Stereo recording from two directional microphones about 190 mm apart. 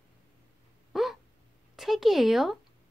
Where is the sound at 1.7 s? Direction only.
Centre (ahead or behind).